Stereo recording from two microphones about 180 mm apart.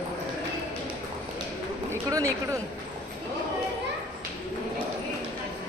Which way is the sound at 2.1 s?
20° right (ahead or behind).